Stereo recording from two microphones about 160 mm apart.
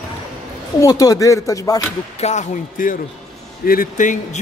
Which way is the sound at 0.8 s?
20° left (ahead or behind).